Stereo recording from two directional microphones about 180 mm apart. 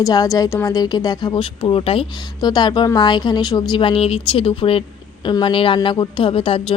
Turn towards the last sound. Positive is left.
turn(degrees=30)  # may be behind; listen again after turning